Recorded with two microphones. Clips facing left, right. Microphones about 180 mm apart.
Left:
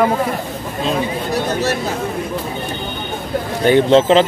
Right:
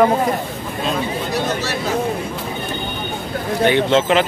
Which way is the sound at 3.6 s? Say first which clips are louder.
Left 4 dB; 40° left (ahead or behind).